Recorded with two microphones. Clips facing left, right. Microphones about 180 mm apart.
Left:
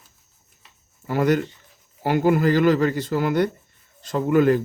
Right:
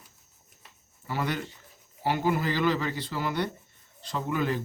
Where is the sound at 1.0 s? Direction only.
45° left (ahead or behind).